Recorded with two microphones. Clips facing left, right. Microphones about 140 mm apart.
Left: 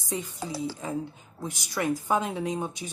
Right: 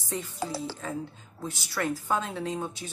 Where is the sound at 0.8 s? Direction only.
15° left (ahead or behind).